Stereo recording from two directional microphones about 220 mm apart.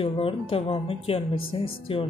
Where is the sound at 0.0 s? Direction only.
25° left (ahead or behind).